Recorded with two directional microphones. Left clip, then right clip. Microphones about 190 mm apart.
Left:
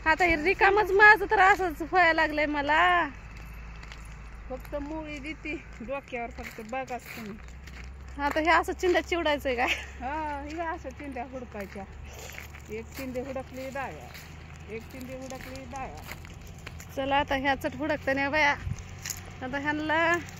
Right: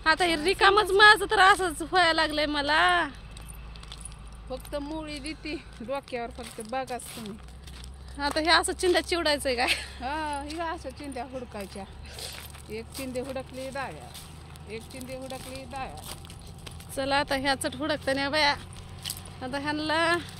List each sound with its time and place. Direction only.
0.0 s a woman's voice: centre (ahead or behind)
4.7 s speech: 10° right (ahead or behind)
5.9 s speech: 25° right (ahead or behind)
8.2 s speech: 5° left (ahead or behind)
10.0 s speech: 10° right (ahead or behind)
11.1 s speech: 15° right (ahead or behind)
11.7 s speech: 5° left (ahead or behind)
16.6 s speech: centre (ahead or behind)